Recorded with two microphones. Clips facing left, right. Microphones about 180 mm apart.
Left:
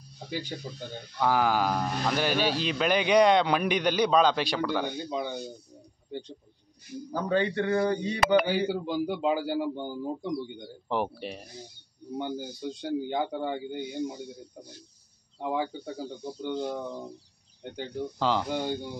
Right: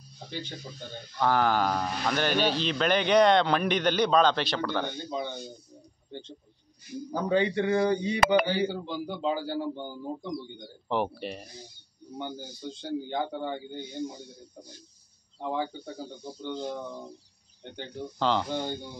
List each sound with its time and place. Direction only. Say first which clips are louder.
0.3 s speech: left 4 dB; 10° left (ahead or behind)
7.1 s speech: right 1 dB; 15° right (ahead or behind)
8.5 s speech: left 1 dB; 15° left (ahead or behind)
10.9 s speech: right 1 dB; centre (ahead or behind)
12.2 s speech: left 4 dB; 15° left (ahead or behind)
15.4 s speech: left 1 dB; 10° left (ahead or behind)